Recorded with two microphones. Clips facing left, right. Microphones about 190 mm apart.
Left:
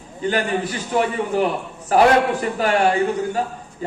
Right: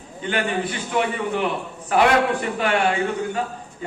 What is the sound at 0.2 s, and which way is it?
A man's voice, 40° left (ahead or behind).